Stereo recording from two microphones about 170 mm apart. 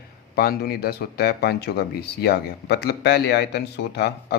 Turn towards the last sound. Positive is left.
turn(degrees=70)  # may be behind; listen again after turning